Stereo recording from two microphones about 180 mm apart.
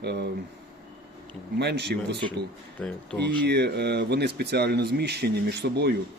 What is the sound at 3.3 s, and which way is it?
Speech, 65° right (ahead or behind).